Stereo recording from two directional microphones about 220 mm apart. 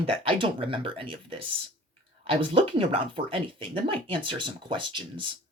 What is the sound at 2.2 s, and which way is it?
Speech, 25° right (ahead or behind).